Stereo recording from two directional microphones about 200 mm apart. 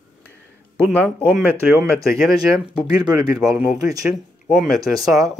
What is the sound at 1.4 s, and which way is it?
Speech, 10° right (ahead or behind).